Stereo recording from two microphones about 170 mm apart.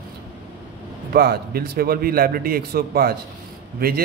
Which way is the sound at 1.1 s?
65° right (ahead or behind).